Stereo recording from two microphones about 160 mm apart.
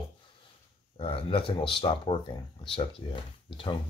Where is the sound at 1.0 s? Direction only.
35° left (ahead or behind).